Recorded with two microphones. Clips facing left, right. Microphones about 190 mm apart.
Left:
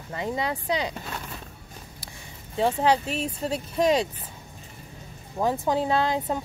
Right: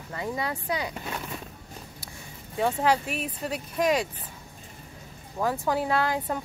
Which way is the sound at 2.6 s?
25° left (ahead or behind).